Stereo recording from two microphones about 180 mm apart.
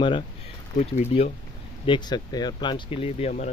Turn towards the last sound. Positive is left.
turn(degrees=35)  # may be behind; listen again after turning